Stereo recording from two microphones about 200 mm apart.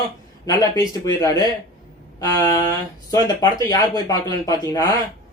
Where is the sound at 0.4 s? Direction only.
20° left (ahead or behind).